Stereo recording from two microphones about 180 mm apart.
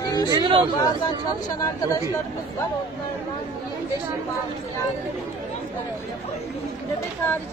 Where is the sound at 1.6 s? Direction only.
20° left (ahead or behind).